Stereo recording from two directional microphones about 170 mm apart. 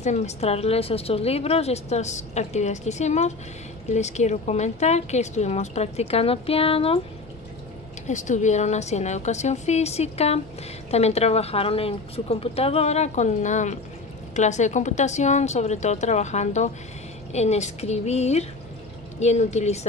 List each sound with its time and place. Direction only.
0.0 s a woman's voice: 40° left (ahead or behind)
8.1 s a woman's voice: 45° left (ahead or behind)